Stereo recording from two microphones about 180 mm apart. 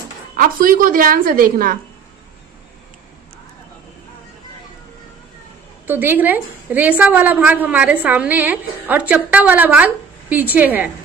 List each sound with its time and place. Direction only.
0.4 s a woman's voice: 50° right (ahead or behind)
5.9 s a woman's voice: 10° right (ahead or behind)